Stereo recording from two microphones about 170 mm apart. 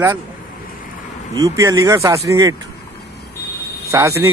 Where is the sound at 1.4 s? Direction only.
20° right (ahead or behind).